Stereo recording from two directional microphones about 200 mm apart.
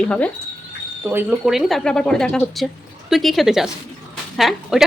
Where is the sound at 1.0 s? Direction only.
5° right (ahead or behind).